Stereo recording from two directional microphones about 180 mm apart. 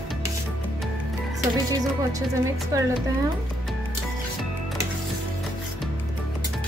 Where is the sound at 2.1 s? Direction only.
20° right (ahead or behind).